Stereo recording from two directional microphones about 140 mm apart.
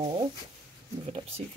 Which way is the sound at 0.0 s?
35° right (ahead or behind).